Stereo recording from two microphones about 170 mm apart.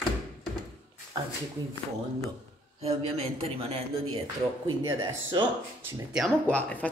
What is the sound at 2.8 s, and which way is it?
A man's voice, 35° right (ahead or behind).